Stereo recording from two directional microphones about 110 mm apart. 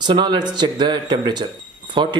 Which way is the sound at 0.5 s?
45° right (ahead or behind).